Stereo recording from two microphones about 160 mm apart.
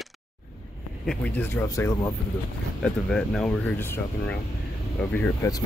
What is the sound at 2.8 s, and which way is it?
Speech, 5° left (ahead or behind).